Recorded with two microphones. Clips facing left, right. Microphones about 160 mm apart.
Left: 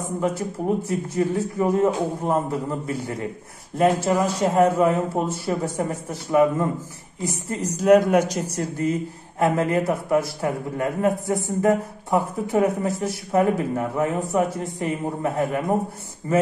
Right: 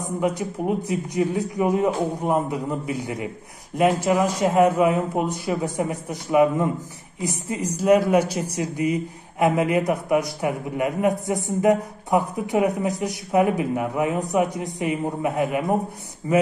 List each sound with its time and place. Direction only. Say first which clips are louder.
0.4 s speech: left 1 dB; 15° right (ahead or behind)